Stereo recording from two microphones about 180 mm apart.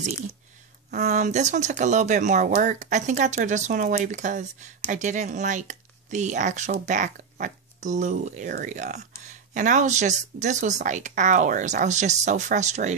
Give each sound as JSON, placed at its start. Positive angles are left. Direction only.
{"t": 1.0, "sound": "speech", "side_deg": -40}